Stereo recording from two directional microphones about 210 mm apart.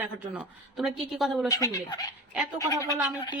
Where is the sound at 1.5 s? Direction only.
15° left (ahead or behind).